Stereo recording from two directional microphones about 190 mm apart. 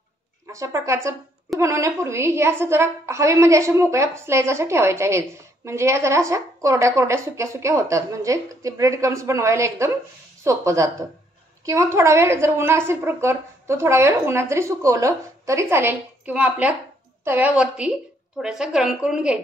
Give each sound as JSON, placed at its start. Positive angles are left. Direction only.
{"t": 0.5, "sound": "a woman's voice", "side_deg": -15}